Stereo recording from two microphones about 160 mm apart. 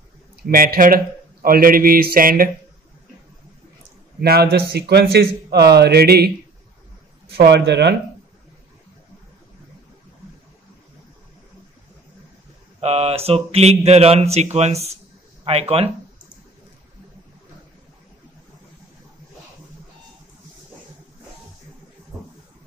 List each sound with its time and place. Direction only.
0.4 s speech: 70° right (ahead or behind)
4.2 s a man's voice: 85° right
7.3 s speech: 90° right
12.8 s speech: 40° right (ahead or behind)